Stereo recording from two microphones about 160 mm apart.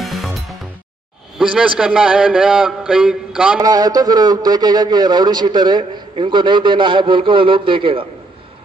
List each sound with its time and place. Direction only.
0.0 s music: centre (ahead or behind)
1.4 s a man's voice: 5° right (ahead or behind)
3.5 s a man's voice: 20° right (ahead or behind)